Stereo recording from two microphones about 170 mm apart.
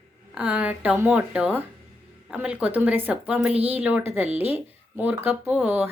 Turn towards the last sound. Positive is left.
turn(degrees=-10)  # may be behind; listen again after turning